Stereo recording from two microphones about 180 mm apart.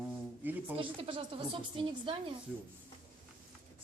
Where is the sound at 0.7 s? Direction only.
30° right (ahead or behind).